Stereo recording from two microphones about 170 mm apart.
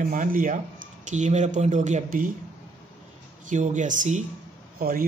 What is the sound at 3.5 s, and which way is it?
Speech, 45° right (ahead or behind).